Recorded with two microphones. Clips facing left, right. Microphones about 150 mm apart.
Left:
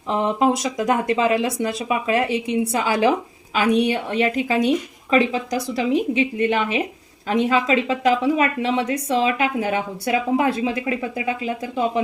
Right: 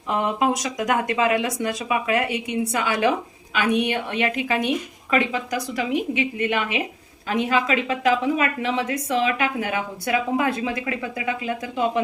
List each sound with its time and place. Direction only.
0.1 s a woman's voice: 30° left (ahead or behind)